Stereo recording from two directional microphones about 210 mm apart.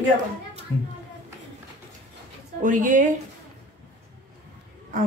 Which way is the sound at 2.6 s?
40° right (ahead or behind).